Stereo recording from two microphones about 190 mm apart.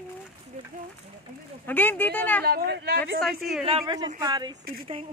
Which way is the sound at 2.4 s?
55° right (ahead or behind).